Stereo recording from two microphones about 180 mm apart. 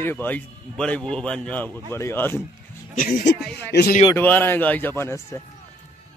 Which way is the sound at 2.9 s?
50° left (ahead or behind).